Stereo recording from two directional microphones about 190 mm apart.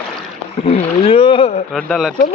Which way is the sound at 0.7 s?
30° left (ahead or behind).